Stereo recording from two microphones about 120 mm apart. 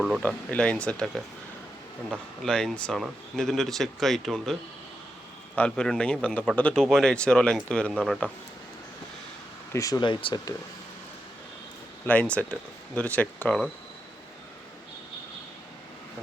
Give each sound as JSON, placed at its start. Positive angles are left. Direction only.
{"t": 0.2, "sound": "speech", "side_deg": 10}
{"t": 5.5, "sound": "speech", "side_deg": 10}
{"t": 9.7, "sound": "speech", "side_deg": 30}
{"t": 10.0, "sound": "speech", "side_deg": 45}
{"t": 12.0, "sound": "speech", "side_deg": 10}